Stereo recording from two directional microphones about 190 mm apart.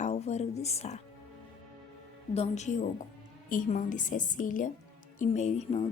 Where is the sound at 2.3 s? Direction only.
35° left (ahead or behind).